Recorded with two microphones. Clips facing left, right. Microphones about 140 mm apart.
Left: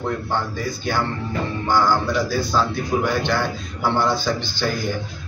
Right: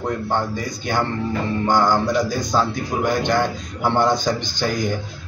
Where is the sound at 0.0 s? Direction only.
15° right (ahead or behind).